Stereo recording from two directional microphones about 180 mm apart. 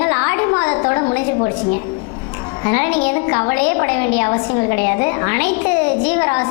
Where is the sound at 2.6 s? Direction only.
15° left (ahead or behind).